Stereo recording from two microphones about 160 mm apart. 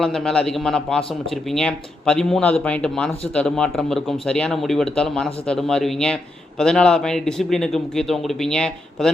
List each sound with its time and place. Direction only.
0.0 s a man's voice: 5° left (ahead or behind)